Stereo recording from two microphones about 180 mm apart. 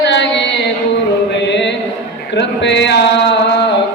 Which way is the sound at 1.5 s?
75° left (ahead or behind).